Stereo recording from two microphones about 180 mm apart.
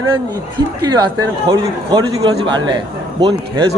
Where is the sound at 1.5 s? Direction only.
20° right (ahead or behind).